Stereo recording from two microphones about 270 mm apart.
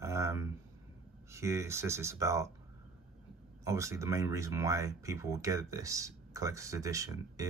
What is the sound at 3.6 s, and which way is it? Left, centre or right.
Speech, centre.